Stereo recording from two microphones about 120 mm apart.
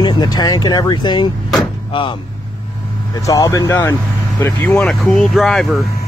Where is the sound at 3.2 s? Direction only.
30° left (ahead or behind).